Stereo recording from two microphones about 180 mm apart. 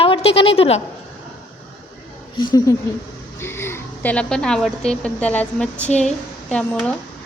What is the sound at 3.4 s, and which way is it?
A woman's voice, 15° left (ahead or behind).